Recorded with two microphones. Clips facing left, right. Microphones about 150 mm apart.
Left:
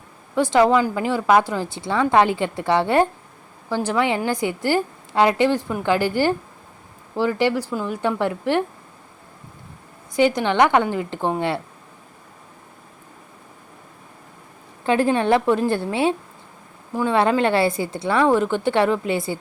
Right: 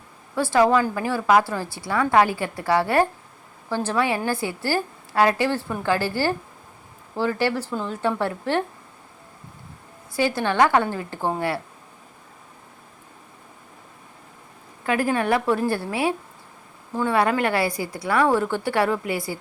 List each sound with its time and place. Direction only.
0.3 s a woman's voice: 20° left (ahead or behind)
10.1 s a woman's voice: 20° left (ahead or behind)
14.8 s a woman's voice: 25° left (ahead or behind)
16.9 s a woman's voice: 10° left (ahead or behind)
17.2 s a woman's voice: 25° left (ahead or behind)